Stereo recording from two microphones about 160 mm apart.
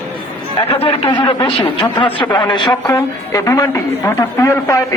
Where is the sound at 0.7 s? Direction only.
35° left (ahead or behind).